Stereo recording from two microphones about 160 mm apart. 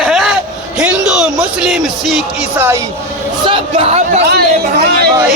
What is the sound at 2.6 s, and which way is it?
Speech, 15° right (ahead or behind).